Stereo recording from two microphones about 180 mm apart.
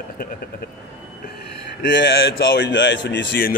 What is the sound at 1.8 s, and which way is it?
Speech, 80° left.